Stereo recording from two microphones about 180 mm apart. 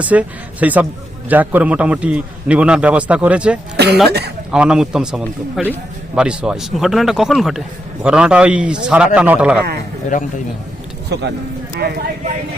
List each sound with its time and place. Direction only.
0.0 s a man's voice: 10° right (ahead or behind)
5.2 s speech: 10° left (ahead or behind)
6.1 s a man's voice: 5° right (ahead or behind)
10.1 s a man's voice: 45° left (ahead or behind)
11.1 s speech: 70° right (ahead or behind)